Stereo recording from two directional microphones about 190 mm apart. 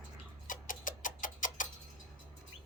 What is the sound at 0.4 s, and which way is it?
Clock, 45° left (ahead or behind).